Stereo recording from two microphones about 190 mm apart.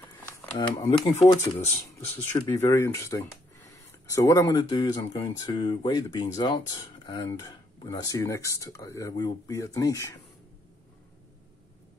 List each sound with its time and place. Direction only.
0.8 s speech: 30° left (ahead or behind)
2.3 s speech: 15° left (ahead or behind)